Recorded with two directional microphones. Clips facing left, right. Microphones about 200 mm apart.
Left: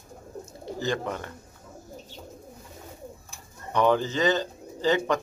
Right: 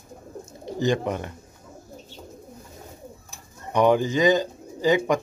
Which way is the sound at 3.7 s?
15° right (ahead or behind).